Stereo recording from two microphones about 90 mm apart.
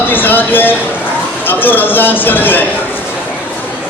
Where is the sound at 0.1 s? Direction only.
20° left (ahead or behind).